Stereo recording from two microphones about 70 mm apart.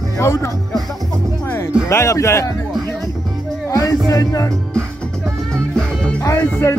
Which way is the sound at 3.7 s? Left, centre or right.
Left.